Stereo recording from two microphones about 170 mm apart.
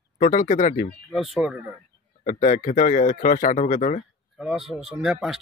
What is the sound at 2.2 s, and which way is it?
Speech, 50° left (ahead or behind).